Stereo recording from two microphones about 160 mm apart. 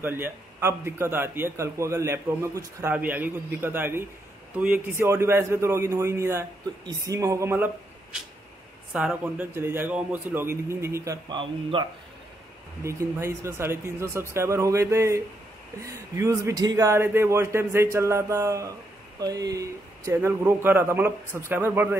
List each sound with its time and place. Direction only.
0.0 s a man's voice: 15° right (ahead or behind)
11.2 s a man's voice: 30° right (ahead or behind)
12.8 s a man's voice: 15° right (ahead or behind)